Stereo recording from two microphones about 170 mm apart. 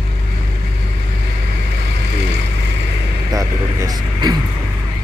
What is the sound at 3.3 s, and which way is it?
Speech, 20° right (ahead or behind).